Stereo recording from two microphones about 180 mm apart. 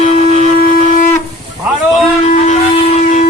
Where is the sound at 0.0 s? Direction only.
40° left (ahead or behind).